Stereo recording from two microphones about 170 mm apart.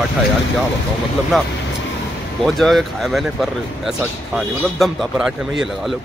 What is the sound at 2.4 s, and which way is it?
Speech, centre (ahead or behind).